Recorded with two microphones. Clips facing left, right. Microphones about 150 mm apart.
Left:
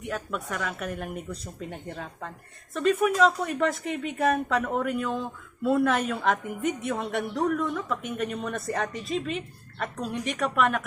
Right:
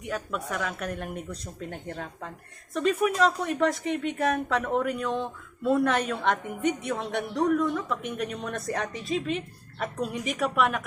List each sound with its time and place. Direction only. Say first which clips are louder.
0.0 s a woman's voice: even; centre (ahead or behind)